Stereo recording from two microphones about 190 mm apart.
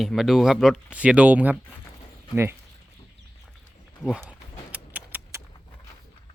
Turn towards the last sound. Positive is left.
turn(degrees=-10)  # may be behind; listen again after turning